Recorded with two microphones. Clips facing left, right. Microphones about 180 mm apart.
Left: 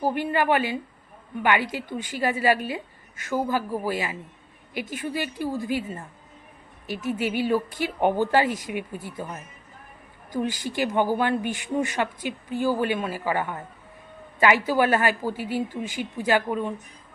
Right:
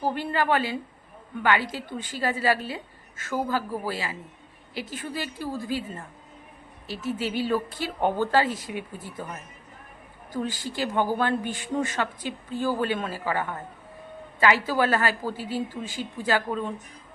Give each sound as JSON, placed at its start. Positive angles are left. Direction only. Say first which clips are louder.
{"t": 0.0, "sound": "speech", "louder": "left 2 dB", "side_deg": 10}
{"t": 6.8, "sound": "speech", "louder": "left 2 dB", "side_deg": 15}
{"t": 10.3, "sound": "speech", "louder": "left 3 dB", "side_deg": 15}